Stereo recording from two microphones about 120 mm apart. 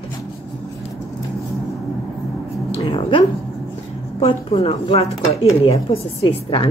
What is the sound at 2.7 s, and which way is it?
A woman's voice, 50° left (ahead or behind).